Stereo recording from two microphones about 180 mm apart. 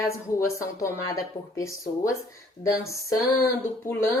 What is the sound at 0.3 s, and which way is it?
Speech, 15° left (ahead or behind).